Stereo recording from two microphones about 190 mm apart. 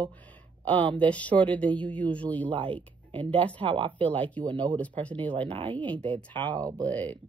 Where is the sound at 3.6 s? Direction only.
25° right (ahead or behind).